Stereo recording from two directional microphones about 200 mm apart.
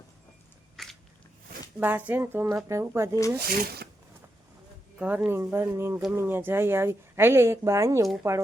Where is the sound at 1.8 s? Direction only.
10° right (ahead or behind).